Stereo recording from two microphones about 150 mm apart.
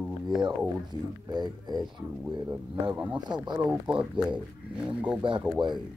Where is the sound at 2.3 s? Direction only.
25° right (ahead or behind).